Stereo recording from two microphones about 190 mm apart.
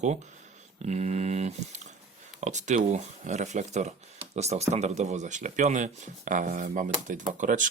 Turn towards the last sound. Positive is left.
turn(degrees=-40)  # may be behind; listen again after turning